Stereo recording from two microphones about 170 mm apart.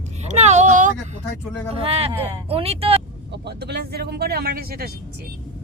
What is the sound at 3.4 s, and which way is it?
Speech, 75° right (ahead or behind).